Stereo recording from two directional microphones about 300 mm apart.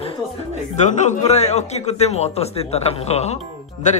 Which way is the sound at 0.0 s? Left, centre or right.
Left.